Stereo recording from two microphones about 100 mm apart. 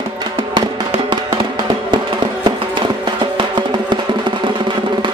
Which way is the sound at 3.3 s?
50° right (ahead or behind).